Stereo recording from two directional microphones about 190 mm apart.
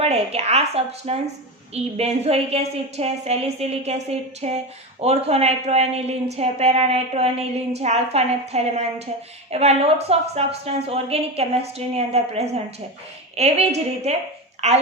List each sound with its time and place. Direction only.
0.0 s a woman's voice: 35° right (ahead or behind)